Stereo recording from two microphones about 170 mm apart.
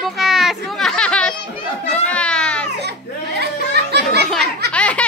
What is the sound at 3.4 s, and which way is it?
Music, 75° right (ahead or behind).